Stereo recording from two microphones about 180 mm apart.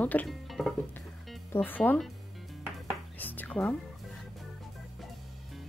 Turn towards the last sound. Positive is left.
turn(degrees=10)  # may be behind; listen again after turning